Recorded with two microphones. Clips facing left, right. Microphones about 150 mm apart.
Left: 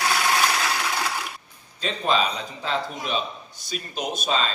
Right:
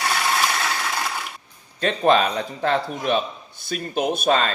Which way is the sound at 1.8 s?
55° right (ahead or behind).